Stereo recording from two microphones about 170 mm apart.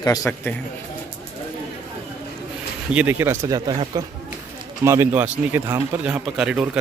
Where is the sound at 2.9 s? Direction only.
10° right (ahead or behind).